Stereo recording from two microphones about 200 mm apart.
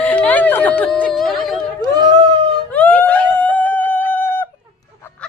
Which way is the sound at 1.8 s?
20° right (ahead or behind).